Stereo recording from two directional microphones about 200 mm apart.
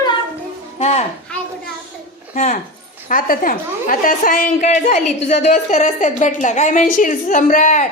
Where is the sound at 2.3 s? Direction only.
40° left (ahead or behind).